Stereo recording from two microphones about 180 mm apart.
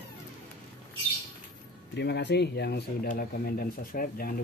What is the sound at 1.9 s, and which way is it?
Speech, 70° left (ahead or behind).